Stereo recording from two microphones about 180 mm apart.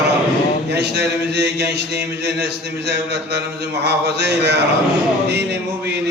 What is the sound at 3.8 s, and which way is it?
A man's voice, 70° right (ahead or behind).